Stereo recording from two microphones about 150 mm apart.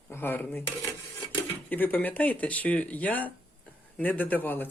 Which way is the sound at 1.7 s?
10° left (ahead or behind).